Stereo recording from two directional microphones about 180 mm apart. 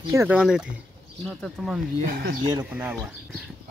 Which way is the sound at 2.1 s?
60° right (ahead or behind).